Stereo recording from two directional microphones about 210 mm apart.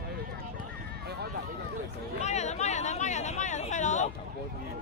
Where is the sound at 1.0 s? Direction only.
50° right (ahead or behind).